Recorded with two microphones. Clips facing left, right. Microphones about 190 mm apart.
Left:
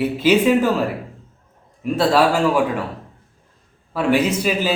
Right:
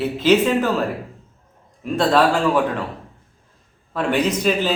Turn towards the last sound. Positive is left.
turn(degrees=10)  # may be behind; listen again after turning